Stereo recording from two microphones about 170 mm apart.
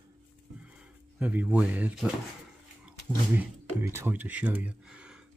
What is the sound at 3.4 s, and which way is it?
Speech, 15° right (ahead or behind).